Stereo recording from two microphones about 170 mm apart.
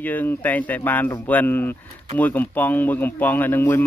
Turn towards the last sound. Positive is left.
turn(degrees=10)  # may be behind; listen again after turning